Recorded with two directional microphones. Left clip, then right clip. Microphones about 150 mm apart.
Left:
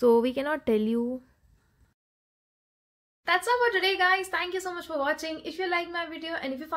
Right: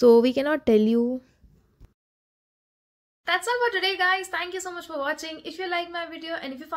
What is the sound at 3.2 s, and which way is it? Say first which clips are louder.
Speech: even; 10° right (ahead or behind).